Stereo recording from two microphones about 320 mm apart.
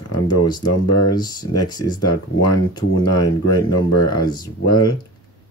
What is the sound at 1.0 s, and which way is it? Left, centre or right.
Speech, centre.